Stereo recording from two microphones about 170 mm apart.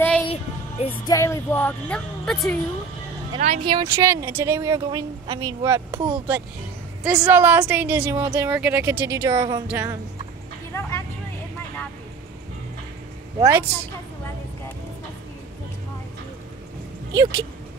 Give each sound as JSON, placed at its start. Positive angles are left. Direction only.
{"t": 0.3, "sound": "music", "side_deg": 35}
{"t": 1.0, "sound": "speech", "side_deg": 20}
{"t": 3.3, "sound": "speech", "side_deg": -40}
{"t": 3.6, "sound": "speech", "side_deg": -25}
{"t": 9.3, "sound": "speech", "side_deg": -30}
{"t": 9.7, "sound": "speech", "side_deg": -15}
{"t": 10.7, "sound": "vehicle", "side_deg": 15}
{"t": 13.4, "sound": "speech", "side_deg": -15}
{"t": 17.1, "sound": "speech", "side_deg": -20}